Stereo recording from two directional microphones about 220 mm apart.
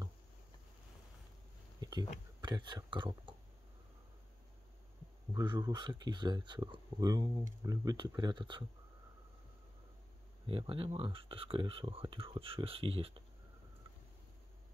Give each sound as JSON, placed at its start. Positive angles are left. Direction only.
{"t": 1.8, "sound": "a sound", "side_deg": -20}
{"t": 2.4, "sound": "speech", "side_deg": -20}
{"t": 5.3, "sound": "speech", "side_deg": -20}
{"t": 10.4, "sound": "speech", "side_deg": -25}